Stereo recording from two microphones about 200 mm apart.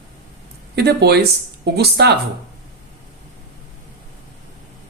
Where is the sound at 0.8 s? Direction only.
55° right (ahead or behind).